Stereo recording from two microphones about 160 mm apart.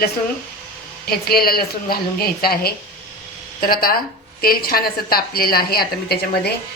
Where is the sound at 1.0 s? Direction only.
70° left (ahead or behind).